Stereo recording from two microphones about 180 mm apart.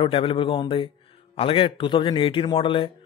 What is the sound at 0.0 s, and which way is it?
A man's voice, 30° left (ahead or behind).